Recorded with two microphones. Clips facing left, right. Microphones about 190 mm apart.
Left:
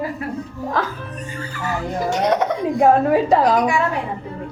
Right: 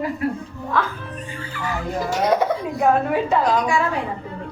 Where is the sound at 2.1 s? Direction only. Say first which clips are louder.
Even; centre (ahead or behind).